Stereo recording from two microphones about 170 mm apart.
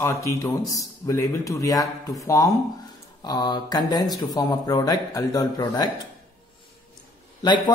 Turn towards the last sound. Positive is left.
turn(degrees=25)  # may be behind; listen again after turning